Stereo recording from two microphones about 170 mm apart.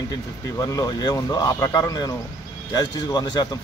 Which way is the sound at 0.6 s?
20° left (ahead or behind).